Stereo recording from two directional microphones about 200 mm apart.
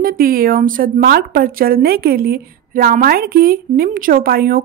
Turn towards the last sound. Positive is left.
turn(degrees=-50)  # may be behind; listen again after turning